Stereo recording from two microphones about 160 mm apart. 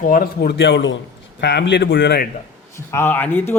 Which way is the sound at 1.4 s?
90° left.